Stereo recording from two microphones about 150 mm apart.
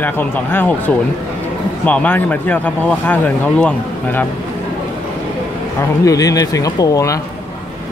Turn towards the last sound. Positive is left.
turn(degrees=25)  # may be behind; listen again after turning